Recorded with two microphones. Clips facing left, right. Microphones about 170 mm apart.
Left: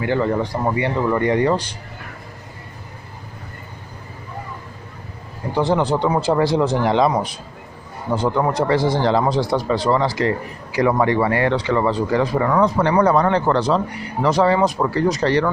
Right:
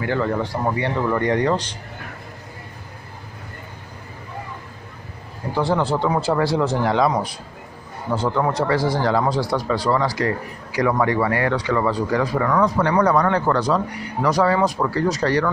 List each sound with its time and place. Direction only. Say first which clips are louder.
0.0 s speech: left 2 dB; 20° left (ahead or behind)
5.5 s a man's voice: left 2 dB; 20° left (ahead or behind)
8.1 s a man's voice: left 2 dB; 15° left (ahead or behind)